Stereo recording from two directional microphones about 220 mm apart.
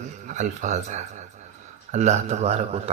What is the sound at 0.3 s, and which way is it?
A man's voice, 35° right (ahead or behind).